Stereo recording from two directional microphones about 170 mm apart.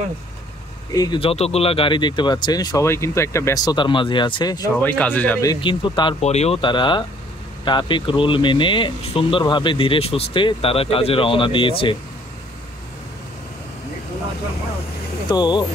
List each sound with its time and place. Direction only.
0.9 s speech: 25° left (ahead or behind)
4.7 s speech: 10° left (ahead or behind)
5.4 s speech: 25° left (ahead or behind)
15.2 s speech: 25° left (ahead or behind)